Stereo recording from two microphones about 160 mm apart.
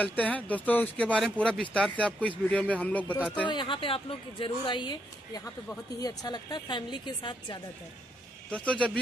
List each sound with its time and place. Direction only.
0.0 s speech: 10° left (ahead or behind)
3.4 s speech: 30° left (ahead or behind)
8.5 s speech: 5° left (ahead or behind)